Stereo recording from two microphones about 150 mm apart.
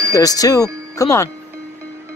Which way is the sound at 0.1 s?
25° left (ahead or behind).